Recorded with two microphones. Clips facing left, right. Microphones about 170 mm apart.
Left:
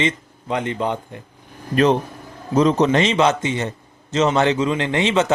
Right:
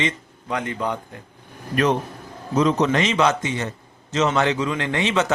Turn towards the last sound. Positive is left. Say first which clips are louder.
# left 3 dB
turn(degrees=25)  # may be behind; listen again after turning